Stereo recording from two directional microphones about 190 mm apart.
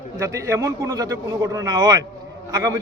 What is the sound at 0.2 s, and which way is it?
A man's voice, 15° right (ahead or behind).